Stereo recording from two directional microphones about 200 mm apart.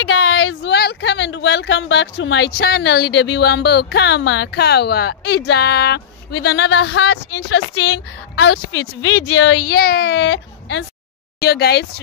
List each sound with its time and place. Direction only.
0.0 s speech: 90° left; by 10.9 s 65° left (ahead or behind)
11.4 s speech: 55° left (ahead or behind)